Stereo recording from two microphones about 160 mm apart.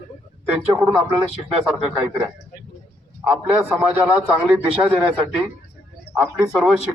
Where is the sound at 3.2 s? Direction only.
5° right (ahead or behind).